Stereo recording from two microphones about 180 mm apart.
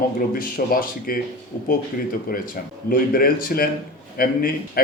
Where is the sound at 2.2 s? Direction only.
55° left (ahead or behind).